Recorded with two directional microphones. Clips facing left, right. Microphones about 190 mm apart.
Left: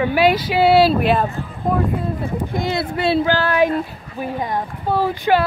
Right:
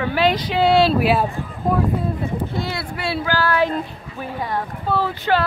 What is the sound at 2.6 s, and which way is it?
Speech, 20° left (ahead or behind).